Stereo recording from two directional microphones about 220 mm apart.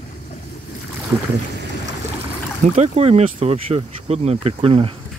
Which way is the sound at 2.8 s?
30° right (ahead or behind).